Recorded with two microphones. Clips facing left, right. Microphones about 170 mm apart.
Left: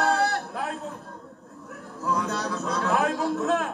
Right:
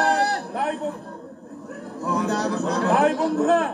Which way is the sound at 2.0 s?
35° right (ahead or behind).